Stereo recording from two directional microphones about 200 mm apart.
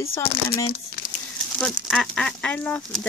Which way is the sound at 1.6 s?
Centre (ahead or behind).